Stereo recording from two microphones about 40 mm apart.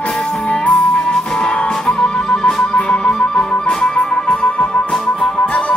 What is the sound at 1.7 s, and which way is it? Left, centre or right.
Music, centre.